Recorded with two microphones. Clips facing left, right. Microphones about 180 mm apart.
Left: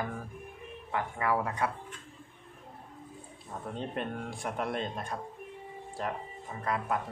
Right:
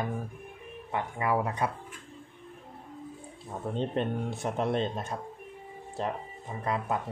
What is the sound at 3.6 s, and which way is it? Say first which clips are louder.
Speech: right 6 dB; 25° right (ahead or behind).